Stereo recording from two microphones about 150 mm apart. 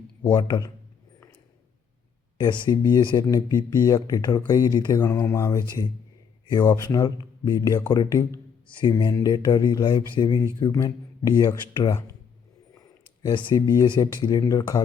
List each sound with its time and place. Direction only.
0.3 s speech: 30° left (ahead or behind)
2.4 s speech: 30° left (ahead or behind)
13.2 s speech: 30° left (ahead or behind)